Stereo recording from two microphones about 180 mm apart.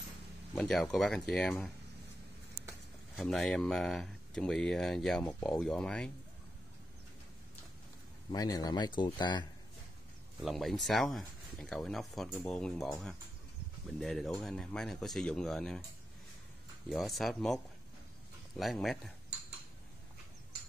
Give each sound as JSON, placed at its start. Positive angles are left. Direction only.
{"t": 0.6, "sound": "speech", "side_deg": 5}
{"t": 3.2, "sound": "speech", "side_deg": 0}
{"t": 8.3, "sound": "a man's voice", "side_deg": 20}
{"t": 10.4, "sound": "speech", "side_deg": 0}
{"t": 16.9, "sound": "speech", "side_deg": 0}
{"t": 18.6, "sound": "speech", "side_deg": 0}